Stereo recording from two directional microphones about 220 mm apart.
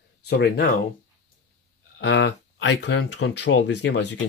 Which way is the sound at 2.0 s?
50° left (ahead or behind).